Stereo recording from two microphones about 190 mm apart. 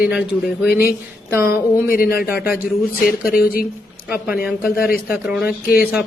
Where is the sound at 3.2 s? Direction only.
50° left (ahead or behind).